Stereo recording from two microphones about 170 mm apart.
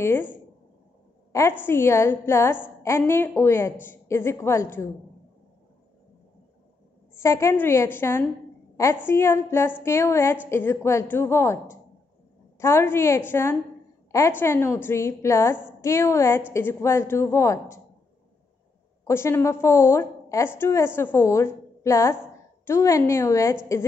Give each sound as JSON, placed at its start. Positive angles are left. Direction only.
{"t": 0.0, "sound": "a woman's voice", "side_deg": 10}
{"t": 1.6, "sound": "a woman's voice", "side_deg": 15}
{"t": 7.2, "sound": "a woman's voice", "side_deg": 15}
{"t": 19.0, "sound": "a woman's voice", "side_deg": 15}